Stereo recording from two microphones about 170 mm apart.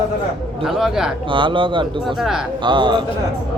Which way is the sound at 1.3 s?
30° right (ahead or behind).